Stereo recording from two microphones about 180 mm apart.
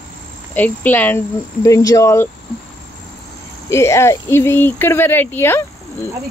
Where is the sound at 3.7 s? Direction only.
15° left (ahead or behind).